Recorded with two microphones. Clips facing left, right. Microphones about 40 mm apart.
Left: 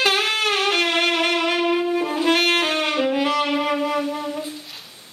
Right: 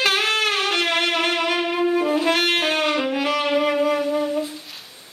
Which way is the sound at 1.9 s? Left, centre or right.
Centre.